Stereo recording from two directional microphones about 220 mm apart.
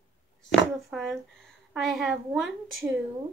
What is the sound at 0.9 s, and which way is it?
Speech, centre (ahead or behind).